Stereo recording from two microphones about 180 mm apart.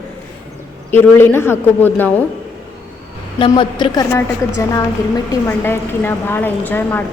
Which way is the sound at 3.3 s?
25° left (ahead or behind).